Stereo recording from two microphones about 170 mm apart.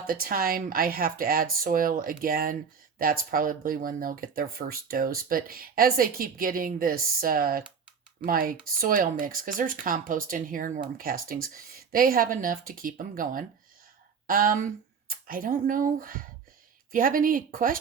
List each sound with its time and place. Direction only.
0.1 s speech: 55° right (ahead or behind)